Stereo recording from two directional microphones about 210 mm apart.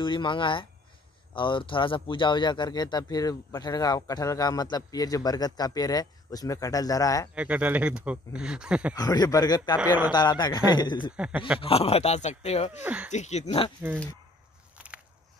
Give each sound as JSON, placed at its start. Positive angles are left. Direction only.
{"t": 0.0, "sound": "speech", "side_deg": 25}
{"t": 7.3, "sound": "speech", "side_deg": -5}
{"t": 8.9, "sound": "speech", "side_deg": 20}
{"t": 11.1, "sound": "speech", "side_deg": -5}
{"t": 11.6, "sound": "speech", "side_deg": 30}
{"t": 12.8, "sound": "speech", "side_deg": -5}
{"t": 13.1, "sound": "speech", "side_deg": 35}
{"t": 14.8, "sound": "biting", "side_deg": -5}